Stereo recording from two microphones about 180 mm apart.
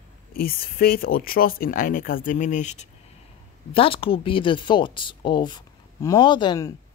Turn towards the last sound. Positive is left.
turn(degrees=20)  # may be behind; listen again after turning